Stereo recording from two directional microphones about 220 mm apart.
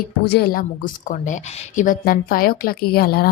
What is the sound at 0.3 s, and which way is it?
A woman's voice, 45° left (ahead or behind).